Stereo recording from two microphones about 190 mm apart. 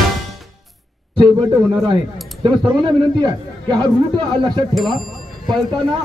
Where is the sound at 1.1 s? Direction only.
25° right (ahead or behind).